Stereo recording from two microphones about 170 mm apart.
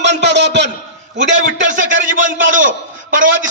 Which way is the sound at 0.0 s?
90° right.